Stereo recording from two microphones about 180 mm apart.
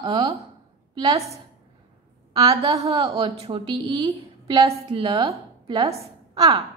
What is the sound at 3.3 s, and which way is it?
A woman's voice, 35° right (ahead or behind).